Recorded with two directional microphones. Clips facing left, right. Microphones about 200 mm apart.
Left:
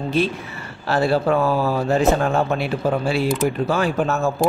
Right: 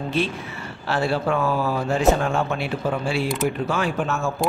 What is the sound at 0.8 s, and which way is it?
Speech, 40° left (ahead or behind).